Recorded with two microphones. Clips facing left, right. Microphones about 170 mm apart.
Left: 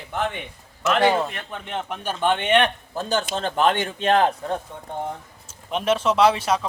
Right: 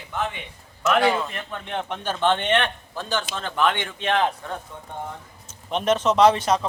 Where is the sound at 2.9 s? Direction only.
45° left (ahead or behind).